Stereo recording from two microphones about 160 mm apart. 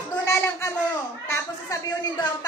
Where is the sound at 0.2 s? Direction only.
15° left (ahead or behind).